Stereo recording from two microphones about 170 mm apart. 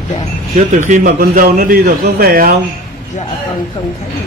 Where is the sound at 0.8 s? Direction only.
50° right (ahead or behind).